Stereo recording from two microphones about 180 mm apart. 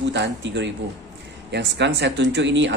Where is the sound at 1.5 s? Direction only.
70° right (ahead or behind); by 2.7 s 85° right.